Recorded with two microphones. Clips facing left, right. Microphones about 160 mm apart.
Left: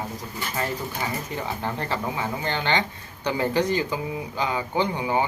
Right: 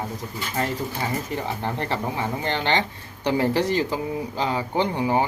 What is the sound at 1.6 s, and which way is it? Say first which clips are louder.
Speech: right 1 dB; 25° right (ahead or behind).